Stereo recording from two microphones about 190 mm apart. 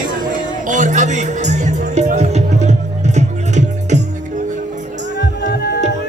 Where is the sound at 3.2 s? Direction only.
35° right (ahead or behind).